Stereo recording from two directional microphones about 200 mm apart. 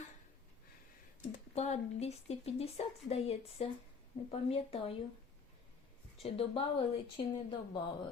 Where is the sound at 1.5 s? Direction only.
30° left (ahead or behind).